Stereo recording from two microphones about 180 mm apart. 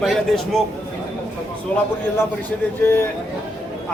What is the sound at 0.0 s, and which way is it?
Speech, centre (ahead or behind).